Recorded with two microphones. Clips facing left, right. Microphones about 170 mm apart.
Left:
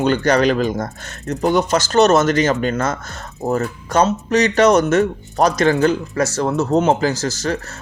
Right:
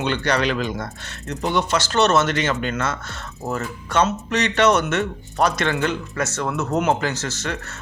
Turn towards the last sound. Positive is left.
turn(degrees=35)  # may be behind; listen again after turning